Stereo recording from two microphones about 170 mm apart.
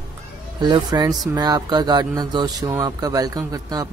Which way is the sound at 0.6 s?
25° right (ahead or behind).